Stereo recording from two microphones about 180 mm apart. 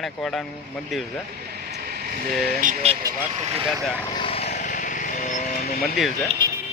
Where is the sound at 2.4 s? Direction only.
45° right (ahead or behind).